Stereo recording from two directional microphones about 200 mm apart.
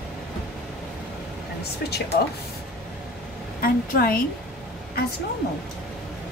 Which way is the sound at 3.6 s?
45° left (ahead or behind).